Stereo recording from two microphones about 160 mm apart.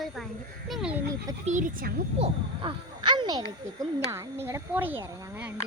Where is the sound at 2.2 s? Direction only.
30° right (ahead or behind).